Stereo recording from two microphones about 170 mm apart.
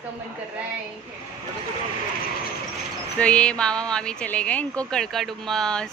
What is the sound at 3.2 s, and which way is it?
Speech, 5° left (ahead or behind).